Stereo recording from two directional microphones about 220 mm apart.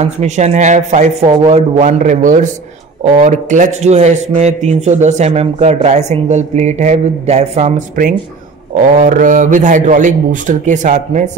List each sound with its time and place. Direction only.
0.0 s speech: 30° right (ahead or behind)